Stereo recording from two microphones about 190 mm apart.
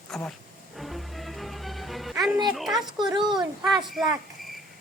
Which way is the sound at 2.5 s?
Centre (ahead or behind).